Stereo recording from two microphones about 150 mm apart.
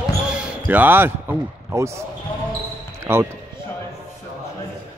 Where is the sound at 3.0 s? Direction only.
15° right (ahead or behind).